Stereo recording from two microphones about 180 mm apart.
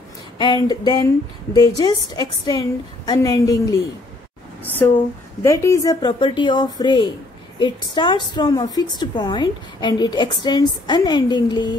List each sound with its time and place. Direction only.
0.4 s a woman's voice: 25° left (ahead or behind)